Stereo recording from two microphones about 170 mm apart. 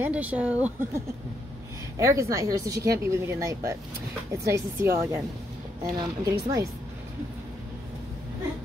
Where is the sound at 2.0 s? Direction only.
20° right (ahead or behind).